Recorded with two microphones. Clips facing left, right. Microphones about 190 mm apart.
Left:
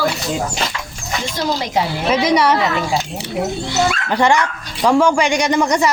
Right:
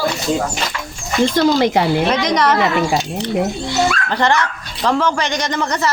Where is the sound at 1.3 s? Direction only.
60° right (ahead or behind).